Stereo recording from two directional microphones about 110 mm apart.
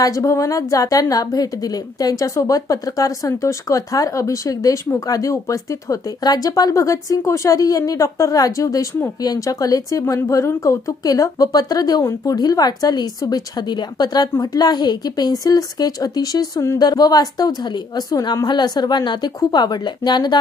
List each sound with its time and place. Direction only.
0.0 s a woman's voice: 30° left (ahead or behind)